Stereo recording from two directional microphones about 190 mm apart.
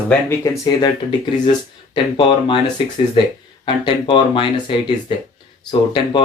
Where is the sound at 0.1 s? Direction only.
10° left (ahead or behind).